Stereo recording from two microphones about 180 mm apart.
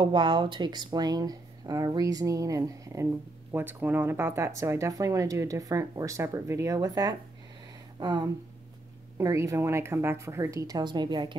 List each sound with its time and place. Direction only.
0.0 s speech: 25° right (ahead or behind)